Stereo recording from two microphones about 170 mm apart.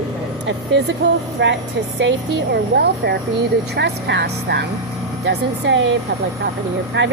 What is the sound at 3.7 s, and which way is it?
Speech, 85° right.